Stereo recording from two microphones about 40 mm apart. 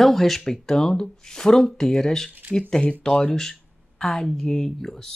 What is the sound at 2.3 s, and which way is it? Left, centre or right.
Speech, right.